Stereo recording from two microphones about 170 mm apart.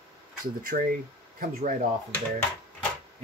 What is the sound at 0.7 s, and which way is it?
Speech, 55° right (ahead or behind).